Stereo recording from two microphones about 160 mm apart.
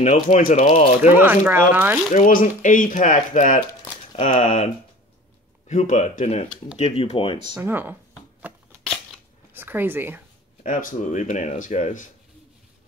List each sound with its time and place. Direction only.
0.0 s speech: 50° left (ahead or behind)
0.7 s speech: 40° left (ahead or behind)
1.0 s speech: 10° right (ahead or behind)
2.1 s speech: 55° left (ahead or behind)
5.7 s speech: 50° left (ahead or behind)
7.5 s speech: 10° right (ahead or behind)
8.4 s shuffling cards: 10° right (ahead or behind)
9.5 s speech: 15° right (ahead or behind)
10.6 s speech: 55° left (ahead or behind)